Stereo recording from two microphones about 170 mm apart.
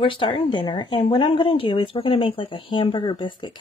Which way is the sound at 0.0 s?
30° left (ahead or behind).